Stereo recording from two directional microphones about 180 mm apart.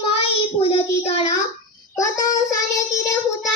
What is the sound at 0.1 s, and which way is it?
Child singing, 35° left (ahead or behind).